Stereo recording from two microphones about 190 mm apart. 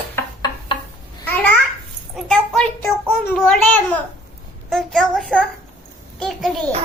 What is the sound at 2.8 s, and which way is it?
Child singing, 10° left (ahead or behind).